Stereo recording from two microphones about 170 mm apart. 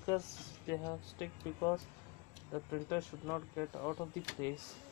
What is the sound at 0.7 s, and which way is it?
Speech, 15° left (ahead or behind).